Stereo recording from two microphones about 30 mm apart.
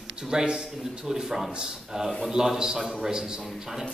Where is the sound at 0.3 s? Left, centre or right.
Right.